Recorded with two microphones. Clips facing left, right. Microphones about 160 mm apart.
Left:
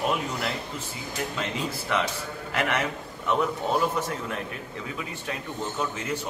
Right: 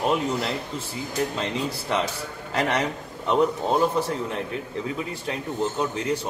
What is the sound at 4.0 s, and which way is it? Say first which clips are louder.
Speech: right 4 dB; 30° right (ahead or behind).